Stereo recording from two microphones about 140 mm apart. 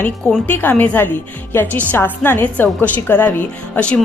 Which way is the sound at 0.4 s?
15° left (ahead or behind).